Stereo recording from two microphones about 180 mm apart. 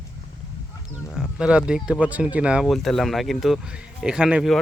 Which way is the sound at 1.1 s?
5° right (ahead or behind).